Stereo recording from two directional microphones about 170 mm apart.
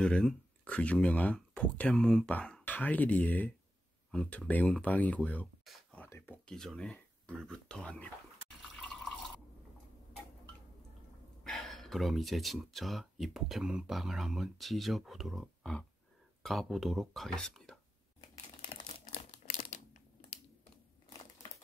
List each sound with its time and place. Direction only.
0.0 s speech: 5° left (ahead or behind)
6.4 s speech: 5° left (ahead or behind)
11.4 s speech: 5° left (ahead or behind)
18.2 s crumpling: 25° left (ahead or behind)
19.3 s crumpling: 45° left (ahead or behind)